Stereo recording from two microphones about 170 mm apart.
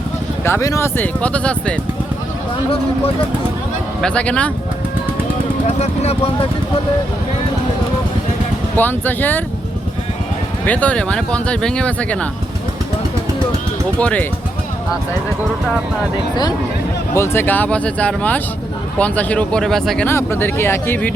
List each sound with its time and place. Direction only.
0.4 s speech: 15° left (ahead or behind)
4.0 s speech: 5° left (ahead or behind)
5.6 s speech: 40° left (ahead or behind)
8.7 s speech: 10° left (ahead or behind)
10.7 s speech: 10° left (ahead or behind)
14.0 s speech: 5° left (ahead or behind)
16.3 s speech: 25° left (ahead or behind)
17.2 s speech: 15° left (ahead or behind)
20.1 s speech: 15° left (ahead or behind)